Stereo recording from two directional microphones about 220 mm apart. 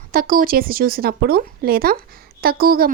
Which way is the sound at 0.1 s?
40° right (ahead or behind).